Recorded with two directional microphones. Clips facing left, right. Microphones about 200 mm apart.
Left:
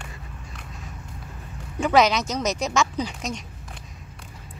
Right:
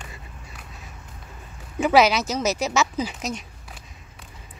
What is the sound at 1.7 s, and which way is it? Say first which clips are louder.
Speech: right 1 dB; 5° right (ahead or behind).